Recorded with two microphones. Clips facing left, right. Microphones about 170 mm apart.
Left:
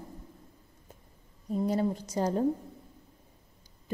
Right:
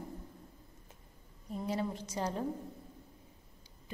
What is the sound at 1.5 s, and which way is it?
Speech, 40° left (ahead or behind).